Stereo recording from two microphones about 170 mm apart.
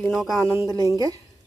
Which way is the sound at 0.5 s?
15° right (ahead or behind).